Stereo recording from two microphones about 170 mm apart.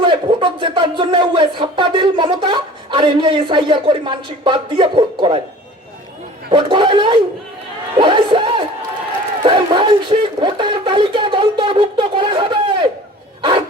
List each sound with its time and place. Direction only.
0.0 s speech: 30° right (ahead or behind)
6.5 s speech: 30° right (ahead or behind)